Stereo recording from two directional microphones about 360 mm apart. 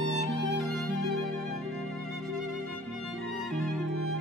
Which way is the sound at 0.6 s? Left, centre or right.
Centre.